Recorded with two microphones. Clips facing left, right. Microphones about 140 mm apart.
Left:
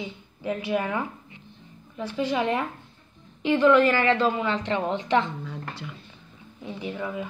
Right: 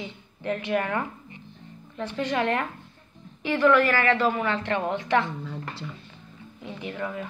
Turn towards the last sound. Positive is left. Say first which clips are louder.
# left 1 dB
turn(degrees=10)  # may be behind; listen again after turning